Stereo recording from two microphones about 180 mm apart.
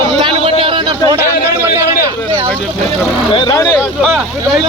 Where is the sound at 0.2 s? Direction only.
30° right (ahead or behind).